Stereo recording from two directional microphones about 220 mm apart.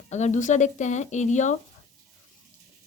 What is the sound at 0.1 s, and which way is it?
Speech, 35° left (ahead or behind).